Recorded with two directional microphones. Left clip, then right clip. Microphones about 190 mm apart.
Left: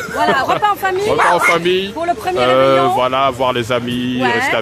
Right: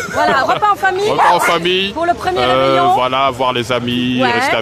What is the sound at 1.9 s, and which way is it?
Speech, 20° right (ahead or behind).